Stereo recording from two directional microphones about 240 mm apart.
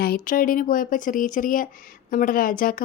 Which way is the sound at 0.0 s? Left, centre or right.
Left.